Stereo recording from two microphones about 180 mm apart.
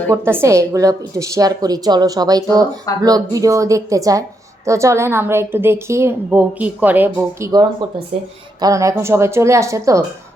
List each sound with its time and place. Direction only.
0.1 s a woman's voice: 15° right (ahead or behind)